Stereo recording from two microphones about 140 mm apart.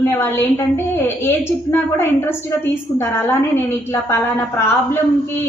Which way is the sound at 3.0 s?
15° left (ahead or behind).